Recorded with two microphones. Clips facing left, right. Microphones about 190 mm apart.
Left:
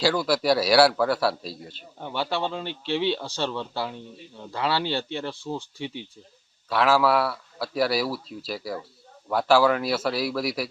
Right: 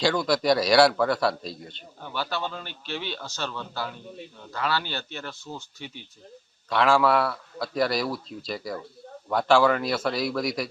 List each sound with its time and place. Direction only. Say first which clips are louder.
0.0 s a man's voice: even; 5° left (ahead or behind)
2.0 s speech: left 3 dB; 25° left (ahead or behind)
6.7 s a man's voice: even; 5° left (ahead or behind)